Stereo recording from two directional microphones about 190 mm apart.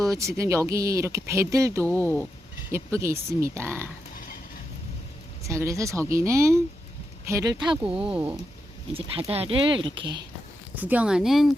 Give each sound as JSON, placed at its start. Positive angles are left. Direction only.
{"t": 0.0, "sound": "speech", "side_deg": -15}
{"t": 5.5, "sound": "speech", "side_deg": -15}
{"t": 7.9, "sound": "speech", "side_deg": -5}
{"t": 8.9, "sound": "speech", "side_deg": -30}
{"t": 10.8, "sound": "speech", "side_deg": -10}